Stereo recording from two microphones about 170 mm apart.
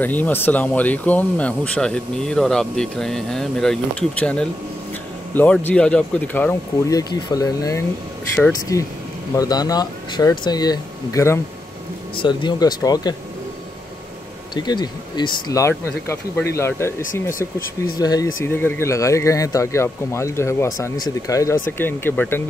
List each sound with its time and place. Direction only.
0.0 s speech: 10° left (ahead or behind)
6.9 s speech: 20° left (ahead or behind)
14.5 s speech: 25° left (ahead or behind)
17.0 s speech: 55° left (ahead or behind)
17.9 s speech: 25° left (ahead or behind)